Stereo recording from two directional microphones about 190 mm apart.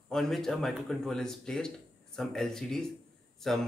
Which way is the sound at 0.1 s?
Centre (ahead or behind).